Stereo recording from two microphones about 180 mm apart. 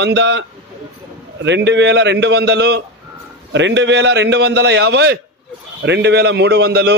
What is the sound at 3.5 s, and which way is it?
A man's voice, 85° right.